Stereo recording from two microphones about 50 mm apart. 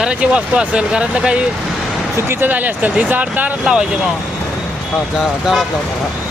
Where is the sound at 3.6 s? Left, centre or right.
Centre.